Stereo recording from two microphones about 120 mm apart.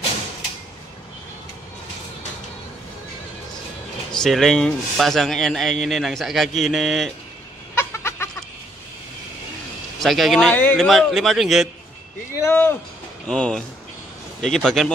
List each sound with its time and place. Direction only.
4.1 s a man's voice: 5° left (ahead or behind)
7.7 s a sound: 20° left (ahead or behind)
9.9 s speech: centre (ahead or behind)
10.5 s speech: 15° left (ahead or behind)
10.8 s a man's voice: 5° left (ahead or behind)
12.4 s speech: 20° left (ahead or behind)
13.3 s a man's voice: 5° left (ahead or behind)